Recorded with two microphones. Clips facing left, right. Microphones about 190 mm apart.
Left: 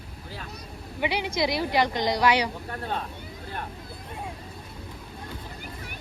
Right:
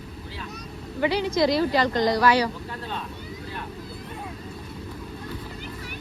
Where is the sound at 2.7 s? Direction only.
50° left (ahead or behind).